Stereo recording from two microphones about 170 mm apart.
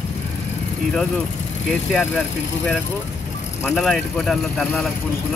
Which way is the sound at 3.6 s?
Centre (ahead or behind).